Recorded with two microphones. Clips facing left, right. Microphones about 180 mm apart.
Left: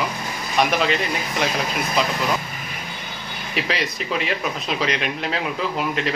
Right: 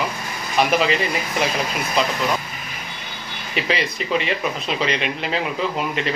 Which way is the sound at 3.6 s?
Centre (ahead or behind).